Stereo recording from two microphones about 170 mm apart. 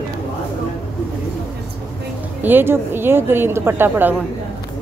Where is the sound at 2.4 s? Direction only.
10° right (ahead or behind).